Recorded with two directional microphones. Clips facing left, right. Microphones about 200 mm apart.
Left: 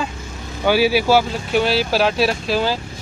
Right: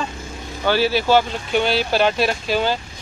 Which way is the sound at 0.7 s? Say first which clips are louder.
Left 2 dB; 10° left (ahead or behind).